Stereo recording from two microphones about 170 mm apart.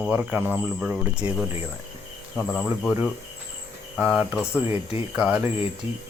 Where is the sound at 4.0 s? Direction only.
5° right (ahead or behind).